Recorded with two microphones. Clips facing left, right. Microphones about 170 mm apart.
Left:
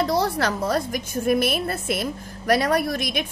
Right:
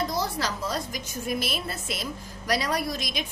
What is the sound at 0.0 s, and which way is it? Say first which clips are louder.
A woman's voice: left 7 dB; 65° left (ahead or behind).